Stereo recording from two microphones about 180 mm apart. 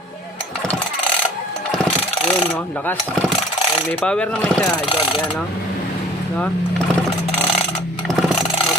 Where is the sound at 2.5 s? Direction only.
10° left (ahead or behind).